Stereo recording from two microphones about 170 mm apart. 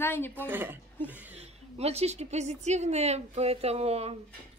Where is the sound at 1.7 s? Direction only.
35° right (ahead or behind).